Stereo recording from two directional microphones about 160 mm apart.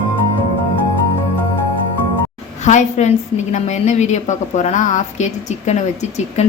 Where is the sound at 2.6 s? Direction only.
45° left (ahead or behind).